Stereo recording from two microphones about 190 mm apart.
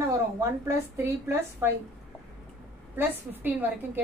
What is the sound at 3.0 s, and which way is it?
A woman's voice, 10° right (ahead or behind).